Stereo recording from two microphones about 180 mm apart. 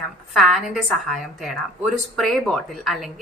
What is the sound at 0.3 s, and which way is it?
A woman's voice, centre (ahead or behind).